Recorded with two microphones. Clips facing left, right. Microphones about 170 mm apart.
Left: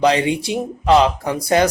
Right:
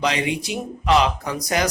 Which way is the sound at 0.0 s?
30° left (ahead or behind).